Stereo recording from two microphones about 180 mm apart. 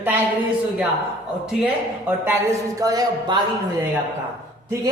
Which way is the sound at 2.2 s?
15° right (ahead or behind).